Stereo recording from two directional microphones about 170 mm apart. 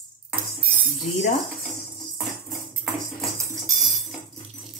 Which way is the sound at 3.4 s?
20° right (ahead or behind).